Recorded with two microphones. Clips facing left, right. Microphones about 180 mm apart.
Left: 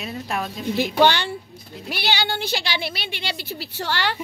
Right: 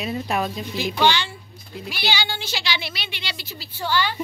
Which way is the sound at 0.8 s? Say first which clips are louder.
Left 3 dB; 55° left (ahead or behind).